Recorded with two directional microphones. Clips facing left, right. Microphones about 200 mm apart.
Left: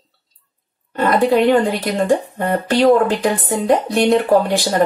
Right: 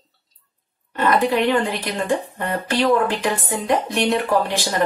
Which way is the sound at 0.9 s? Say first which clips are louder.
Left 4 dB; 40° left (ahead or behind).